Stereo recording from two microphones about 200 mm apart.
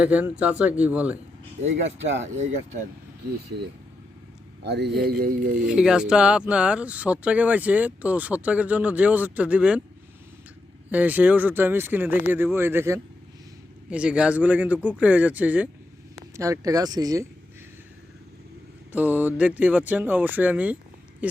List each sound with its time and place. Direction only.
0.0 s speech: 5° right (ahead or behind)
2.2 s speech: 35° right (ahead or behind)
4.6 s a sound: 55° right (ahead or behind)
5.5 s speech: 5° right (ahead or behind)
10.9 s speech: 10° right (ahead or behind)
18.9 s speech: 10° right (ahead or behind)